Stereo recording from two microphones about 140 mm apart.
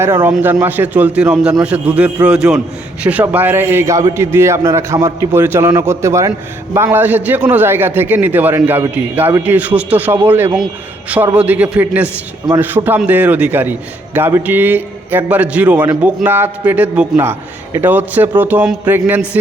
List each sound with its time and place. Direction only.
0.0 s a man's voice: 20° right (ahead or behind)